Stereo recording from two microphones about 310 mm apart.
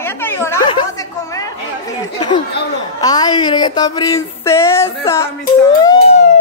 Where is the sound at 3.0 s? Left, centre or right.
Centre.